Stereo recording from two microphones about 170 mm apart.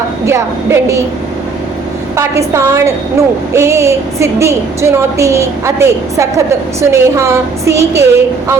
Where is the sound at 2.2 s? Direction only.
15° right (ahead or behind).